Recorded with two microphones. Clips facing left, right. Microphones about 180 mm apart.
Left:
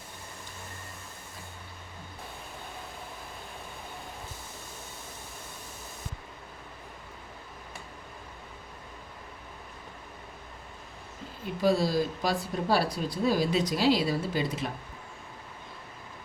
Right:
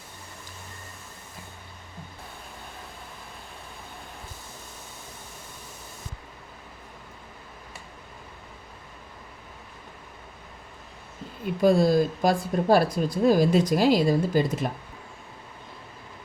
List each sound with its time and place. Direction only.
11.6 s speech: 50° right (ahead or behind)